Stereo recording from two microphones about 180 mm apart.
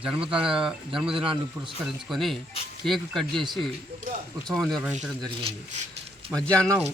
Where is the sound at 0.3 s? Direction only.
30° right (ahead or behind).